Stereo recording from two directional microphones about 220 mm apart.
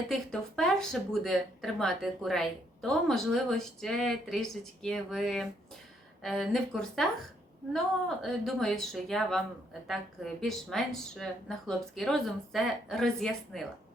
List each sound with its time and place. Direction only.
0.1 s speech: 5° left (ahead or behind)